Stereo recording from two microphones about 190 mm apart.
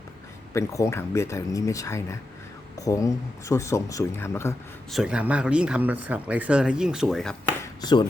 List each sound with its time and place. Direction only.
0.5 s speech: 15° left (ahead or behind)
4.9 s speech: 5° right (ahead or behind)
7.6 s a sound: 20° left (ahead or behind)